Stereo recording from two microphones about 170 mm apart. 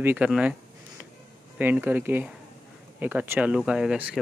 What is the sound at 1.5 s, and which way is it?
Speech, 10° right (ahead or behind).